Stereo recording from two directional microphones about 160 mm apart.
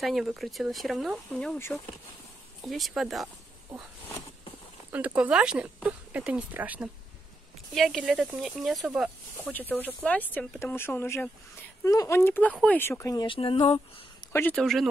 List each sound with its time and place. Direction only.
0.0 s speech: centre (ahead or behind)
2.6 s speech: centre (ahead or behind)
4.9 s speech: 10° right (ahead or behind)
7.7 s speech: centre (ahead or behind)
9.4 s a woman's voice: 10° left (ahead or behind); by 14.0 s 35° left (ahead or behind)
14.3 s speech: 10° left (ahead or behind)
14.6 s speech: centre (ahead or behind)